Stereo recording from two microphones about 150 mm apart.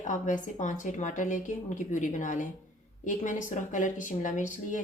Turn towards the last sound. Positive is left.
turn(degrees=60)  # may be behind; listen again after turning